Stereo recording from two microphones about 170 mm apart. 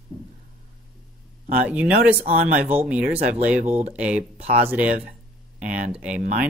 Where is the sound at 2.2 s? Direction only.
45° right (ahead or behind).